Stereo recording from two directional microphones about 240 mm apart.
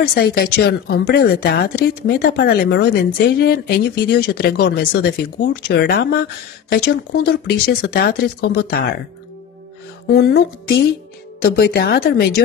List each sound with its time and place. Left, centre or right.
0.0 s a woman's voice: left
10.1 s a woman's voice: left